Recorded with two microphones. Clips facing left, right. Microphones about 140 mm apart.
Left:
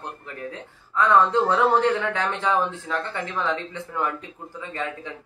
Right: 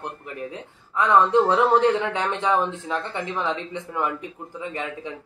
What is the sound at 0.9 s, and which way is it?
A man's voice, 15° right (ahead or behind).